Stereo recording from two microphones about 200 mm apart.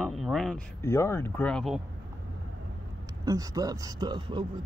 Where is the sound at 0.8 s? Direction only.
15° left (ahead or behind).